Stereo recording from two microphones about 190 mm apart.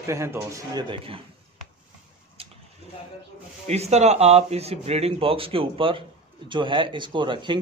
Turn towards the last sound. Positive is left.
turn(degrees=-25)  # may be behind; listen again after turning